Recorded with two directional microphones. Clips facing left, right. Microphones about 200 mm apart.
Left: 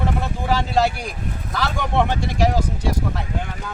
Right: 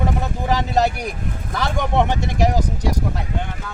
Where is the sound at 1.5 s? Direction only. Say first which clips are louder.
Right 2 dB; 20° right (ahead or behind).